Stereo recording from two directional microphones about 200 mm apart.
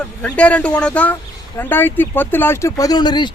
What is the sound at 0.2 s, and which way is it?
Speech, 5° left (ahead or behind).